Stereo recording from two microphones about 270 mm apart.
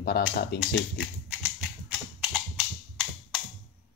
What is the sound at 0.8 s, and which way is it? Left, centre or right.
Typing, centre.